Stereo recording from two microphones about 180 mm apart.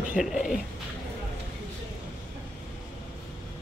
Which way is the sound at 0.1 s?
Centre (ahead or behind).